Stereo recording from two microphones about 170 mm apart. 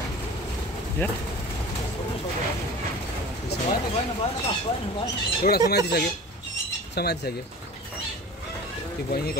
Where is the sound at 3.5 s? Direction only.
70° left (ahead or behind).